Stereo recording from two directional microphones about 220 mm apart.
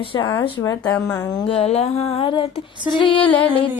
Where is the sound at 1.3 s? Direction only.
20° left (ahead or behind).